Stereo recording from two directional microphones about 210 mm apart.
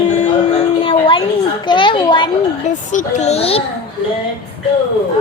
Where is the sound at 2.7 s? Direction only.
35° left (ahead or behind).